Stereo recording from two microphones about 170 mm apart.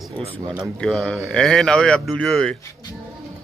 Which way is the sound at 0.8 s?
5° left (ahead or behind).